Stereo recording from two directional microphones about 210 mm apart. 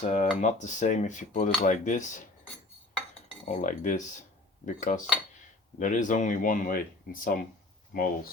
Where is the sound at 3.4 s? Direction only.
35° left (ahead or behind).